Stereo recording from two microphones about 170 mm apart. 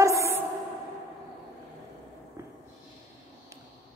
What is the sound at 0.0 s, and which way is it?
Music, 15° right (ahead or behind).